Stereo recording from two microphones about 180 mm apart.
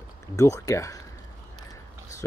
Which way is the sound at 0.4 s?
15° left (ahead or behind).